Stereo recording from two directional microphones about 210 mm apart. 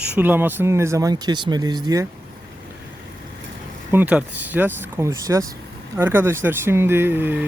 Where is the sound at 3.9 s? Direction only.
10° right (ahead or behind).